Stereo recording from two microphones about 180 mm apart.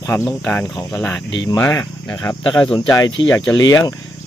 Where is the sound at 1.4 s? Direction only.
20° left (ahead or behind).